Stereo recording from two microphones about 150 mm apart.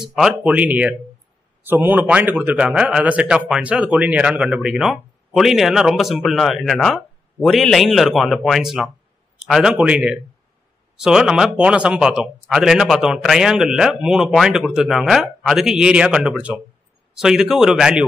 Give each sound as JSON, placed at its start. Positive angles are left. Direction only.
{"t": 0.4, "sound": "a man's voice", "side_deg": -10}